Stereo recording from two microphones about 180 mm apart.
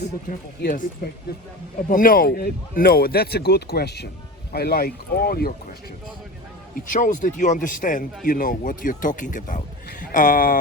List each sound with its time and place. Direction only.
0.3 s speech: 55° left (ahead or behind)
6.7 s a man's voice: 45° left (ahead or behind)